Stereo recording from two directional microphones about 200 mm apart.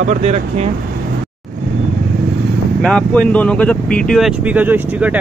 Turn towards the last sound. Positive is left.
turn(degrees=-5)  # may be behind; listen again after turning